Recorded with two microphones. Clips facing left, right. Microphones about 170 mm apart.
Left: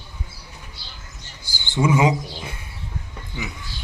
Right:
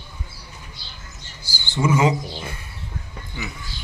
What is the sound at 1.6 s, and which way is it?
Speech, 15° left (ahead or behind).